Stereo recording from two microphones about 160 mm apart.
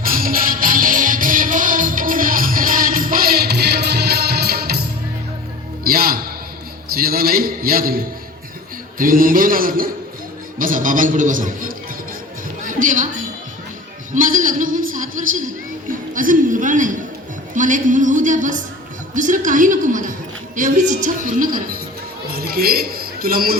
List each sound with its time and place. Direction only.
0.0 s music: 65° right (ahead or behind)
6.9 s a sound: 70° right (ahead or behind)
9.0 s a man's voice: 60° right (ahead or behind)
12.6 s music: 55° right (ahead or behind)
14.1 s a sound: 55° right (ahead or behind)
17.5 s a woman's voice: 55° right (ahead or behind)
19.1 s a sound: 55° right (ahead or behind)
20.6 s a woman's voice: 50° right (ahead or behind)
22.3 s speech: 70° right (ahead or behind)